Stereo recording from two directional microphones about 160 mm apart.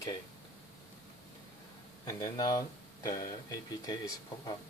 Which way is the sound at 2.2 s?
25° left (ahead or behind).